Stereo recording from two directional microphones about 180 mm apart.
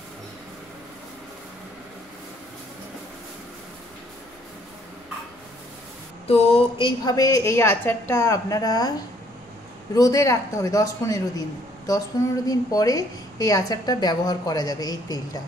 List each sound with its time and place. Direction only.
6.2 s a sound: 35° left (ahead or behind)
7.1 s a woman's voice: 20° left (ahead or behind)
9.9 s a man's voice: 20° left (ahead or behind)